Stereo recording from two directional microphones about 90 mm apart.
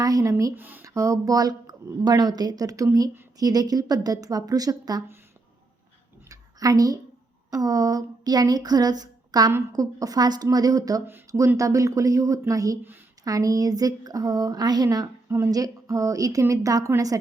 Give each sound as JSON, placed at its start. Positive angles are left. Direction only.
{"t": 0.0, "sound": "speech", "side_deg": -40}
{"t": 0.5, "sound": "speech", "side_deg": -20}
{"t": 0.9, "sound": "a woman's voice", "side_deg": -35}
{"t": 6.2, "sound": "a sound", "side_deg": -40}
{"t": 7.5, "sound": "a woman's voice", "side_deg": -45}